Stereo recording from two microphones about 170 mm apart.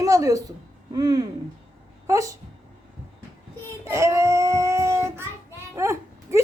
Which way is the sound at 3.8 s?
15° right (ahead or behind).